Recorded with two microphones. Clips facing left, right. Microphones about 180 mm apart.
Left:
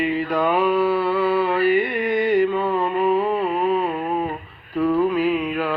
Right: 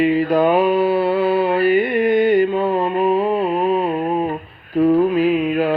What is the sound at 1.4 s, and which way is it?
Carnatic music, 25° right (ahead or behind).